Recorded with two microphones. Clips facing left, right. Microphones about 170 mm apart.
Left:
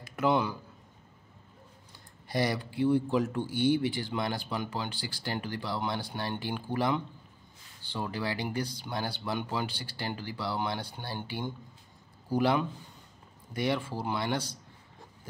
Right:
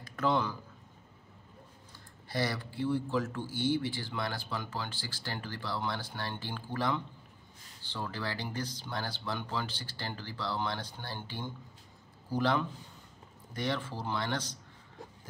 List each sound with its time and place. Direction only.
0.1 s a man's voice: 10° left (ahead or behind)
2.2 s speech: 15° left (ahead or behind)